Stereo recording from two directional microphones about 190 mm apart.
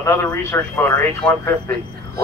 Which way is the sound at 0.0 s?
15° left (ahead or behind).